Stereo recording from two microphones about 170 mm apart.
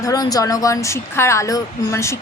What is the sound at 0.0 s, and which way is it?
A woman's voice, 20° left (ahead or behind).